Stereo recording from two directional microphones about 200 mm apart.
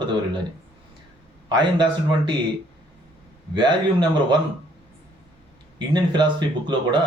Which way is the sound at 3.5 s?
20° right (ahead or behind).